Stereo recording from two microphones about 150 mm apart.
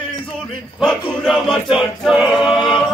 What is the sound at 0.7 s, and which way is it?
Choir, centre (ahead or behind).